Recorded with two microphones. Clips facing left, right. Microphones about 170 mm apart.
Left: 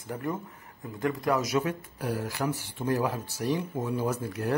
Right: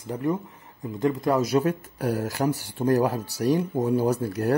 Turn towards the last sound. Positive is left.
turn(degrees=-40)  # may be behind; listen again after turning